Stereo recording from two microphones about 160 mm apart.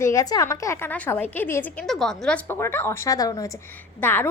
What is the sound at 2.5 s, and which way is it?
A woman's voice, 15° left (ahead or behind).